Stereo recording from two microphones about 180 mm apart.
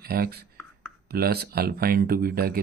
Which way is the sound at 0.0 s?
55° right (ahead or behind).